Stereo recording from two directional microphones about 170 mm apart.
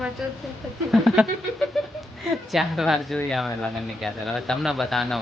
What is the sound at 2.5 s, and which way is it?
Speech, centre (ahead or behind).